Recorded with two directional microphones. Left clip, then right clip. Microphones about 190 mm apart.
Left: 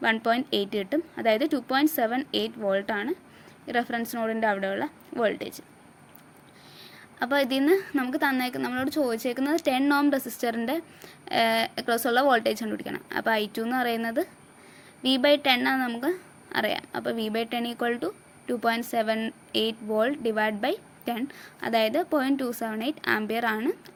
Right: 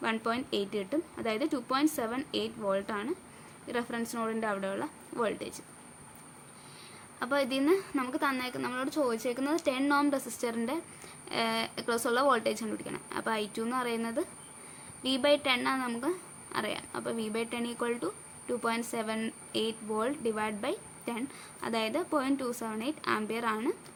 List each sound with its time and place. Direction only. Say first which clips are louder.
0.0 s speech: left 8 dB; 30° left (ahead or behind)
7.2 s speech: left 5 dB; 30° left (ahead or behind)